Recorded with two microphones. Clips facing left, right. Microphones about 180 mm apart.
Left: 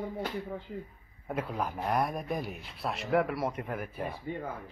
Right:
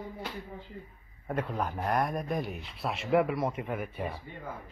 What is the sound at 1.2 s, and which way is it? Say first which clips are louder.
Speech: right 1 dB; centre (ahead or behind).